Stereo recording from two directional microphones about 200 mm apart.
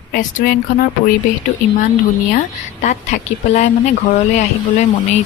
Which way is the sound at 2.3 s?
35° left (ahead or behind).